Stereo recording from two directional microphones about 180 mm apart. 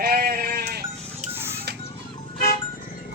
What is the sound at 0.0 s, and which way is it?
Sheep, 60° right (ahead or behind).